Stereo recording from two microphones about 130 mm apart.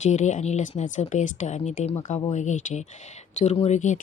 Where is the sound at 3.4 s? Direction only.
60° left (ahead or behind).